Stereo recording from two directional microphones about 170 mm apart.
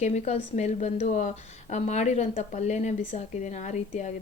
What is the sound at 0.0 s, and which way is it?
A woman's voice, 40° left (ahead or behind).